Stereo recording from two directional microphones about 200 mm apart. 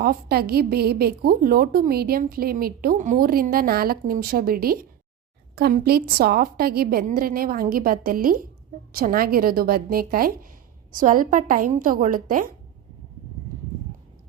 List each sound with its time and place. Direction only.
0.0 s a woman's voice: 50° right (ahead or behind)